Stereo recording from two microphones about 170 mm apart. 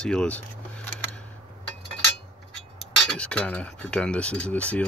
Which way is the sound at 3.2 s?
5° left (ahead or behind).